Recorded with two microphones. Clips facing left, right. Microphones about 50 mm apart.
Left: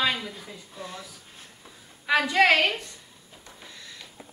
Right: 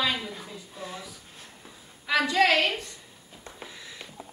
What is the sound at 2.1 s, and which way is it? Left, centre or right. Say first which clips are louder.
Speech: left 2 dB; left.